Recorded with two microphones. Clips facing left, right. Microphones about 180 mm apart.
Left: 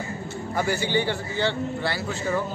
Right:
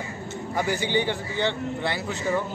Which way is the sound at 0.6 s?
15° right (ahead or behind).